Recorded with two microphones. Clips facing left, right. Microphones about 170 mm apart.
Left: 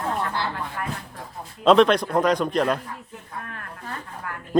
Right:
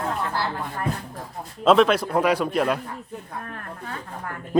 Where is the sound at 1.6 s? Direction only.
5° right (ahead or behind).